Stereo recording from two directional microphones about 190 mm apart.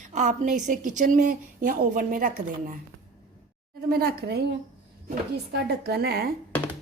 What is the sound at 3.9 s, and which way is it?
Speech, 50° right (ahead or behind).